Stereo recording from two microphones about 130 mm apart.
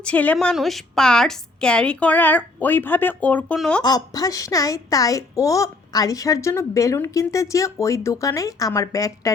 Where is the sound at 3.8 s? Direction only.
30° left (ahead or behind).